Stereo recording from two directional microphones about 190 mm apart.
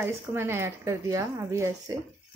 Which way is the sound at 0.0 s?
10° right (ahead or behind).